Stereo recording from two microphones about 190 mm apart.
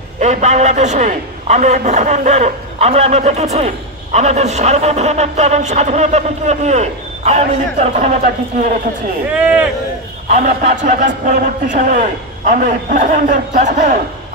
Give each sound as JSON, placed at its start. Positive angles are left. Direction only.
{"t": 0.2, "sound": "a man's voice", "side_deg": -35}
{"t": 9.3, "sound": "speech", "side_deg": -5}
{"t": 10.3, "sound": "a man's voice", "side_deg": -40}